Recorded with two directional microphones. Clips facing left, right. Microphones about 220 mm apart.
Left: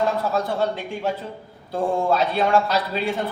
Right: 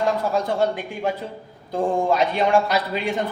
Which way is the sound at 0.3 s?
15° right (ahead or behind).